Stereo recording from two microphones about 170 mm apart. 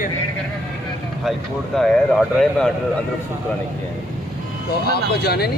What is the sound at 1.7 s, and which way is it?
Speech, 5° left (ahead or behind).